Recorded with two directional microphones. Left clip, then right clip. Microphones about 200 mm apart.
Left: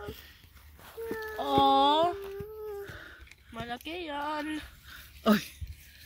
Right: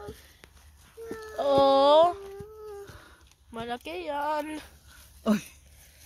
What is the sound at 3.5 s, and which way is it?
Speech, 50° right (ahead or behind).